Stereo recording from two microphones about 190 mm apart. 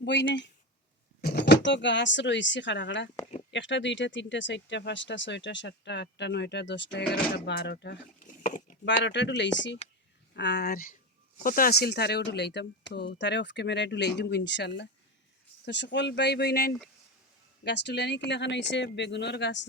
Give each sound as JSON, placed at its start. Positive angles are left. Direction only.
{"t": 0.0, "sound": "speech", "side_deg": 65}
{"t": 8.4, "sound": "a sound", "side_deg": 45}
{"t": 8.8, "sound": "speech", "side_deg": 65}